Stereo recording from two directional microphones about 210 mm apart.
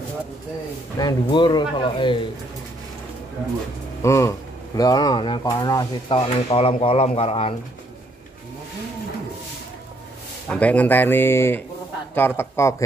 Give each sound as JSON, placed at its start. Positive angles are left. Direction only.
{"t": 0.9, "sound": "speech", "side_deg": 20}
{"t": 4.0, "sound": "speech", "side_deg": 15}
{"t": 10.5, "sound": "speech", "side_deg": 5}